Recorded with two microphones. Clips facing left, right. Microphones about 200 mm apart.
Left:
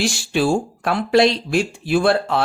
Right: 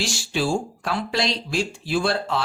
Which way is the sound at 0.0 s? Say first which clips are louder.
Left 6 dB; 55° left (ahead or behind).